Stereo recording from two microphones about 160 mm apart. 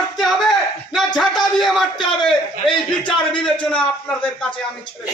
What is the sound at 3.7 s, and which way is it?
Speech, 5° left (ahead or behind).